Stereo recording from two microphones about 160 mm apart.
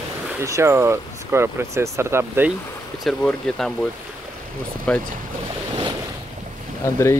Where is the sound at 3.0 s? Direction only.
Centre (ahead or behind).